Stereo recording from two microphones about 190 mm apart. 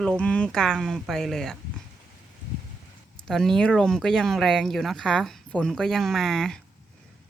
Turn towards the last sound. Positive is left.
turn(degrees=5)  # may be behind; listen again after turning